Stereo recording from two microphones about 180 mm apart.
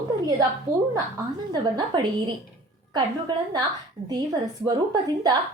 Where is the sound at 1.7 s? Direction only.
25° right (ahead or behind).